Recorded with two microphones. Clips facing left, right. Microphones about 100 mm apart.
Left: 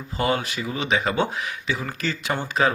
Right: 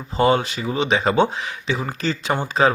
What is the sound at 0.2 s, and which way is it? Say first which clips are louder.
Speech: right 6 dB; 25° right (ahead or behind).